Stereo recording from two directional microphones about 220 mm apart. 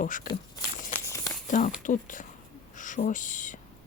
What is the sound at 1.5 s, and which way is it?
Speech, 35° left (ahead or behind).